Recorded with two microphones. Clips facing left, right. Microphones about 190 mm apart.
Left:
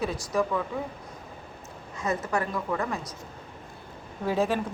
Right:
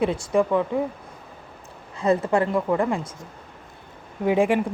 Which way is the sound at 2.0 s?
30° right (ahead or behind).